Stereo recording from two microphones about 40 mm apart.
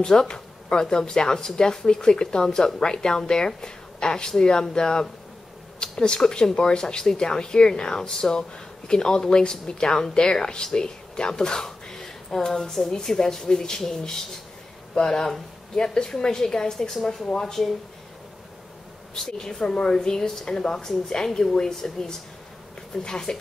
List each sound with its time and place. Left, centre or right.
0.0 s speech: centre
19.1 s speech: centre